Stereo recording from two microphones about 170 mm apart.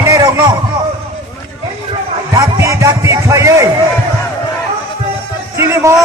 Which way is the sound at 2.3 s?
20° right (ahead or behind).